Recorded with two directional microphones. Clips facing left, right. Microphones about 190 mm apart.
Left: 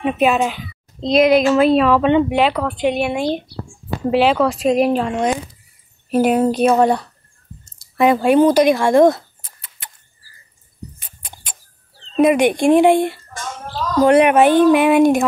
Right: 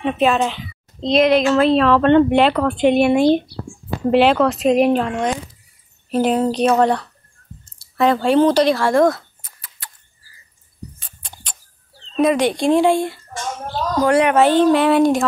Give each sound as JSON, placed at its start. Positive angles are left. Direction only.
{"t": 0.0, "sound": "speech", "side_deg": 10}
{"t": 11.0, "sound": "a sound", "side_deg": 5}
{"t": 12.2, "sound": "speech", "side_deg": 15}